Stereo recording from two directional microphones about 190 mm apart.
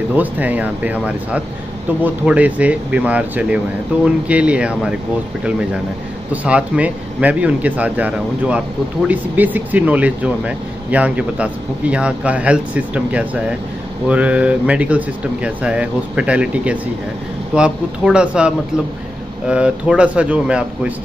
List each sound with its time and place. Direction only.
0.1 s speech: 10° right (ahead or behind)
6.3 s speech: 5° right (ahead or behind)